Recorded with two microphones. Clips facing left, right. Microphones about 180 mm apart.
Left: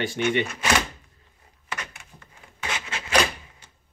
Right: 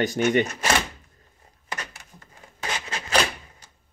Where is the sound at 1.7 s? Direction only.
35° right (ahead or behind).